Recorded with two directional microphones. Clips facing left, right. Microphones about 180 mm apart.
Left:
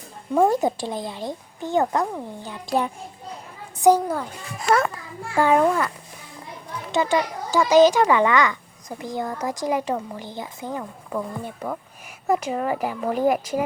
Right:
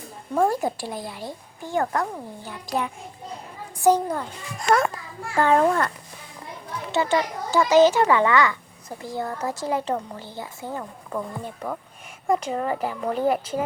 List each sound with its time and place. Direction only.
0.3 s speech: 20° left (ahead or behind)
3.8 s a child's voice: 10° left (ahead or behind)
6.9 s speech: 15° left (ahead or behind)
11.1 s a child's voice: 5° left (ahead or behind)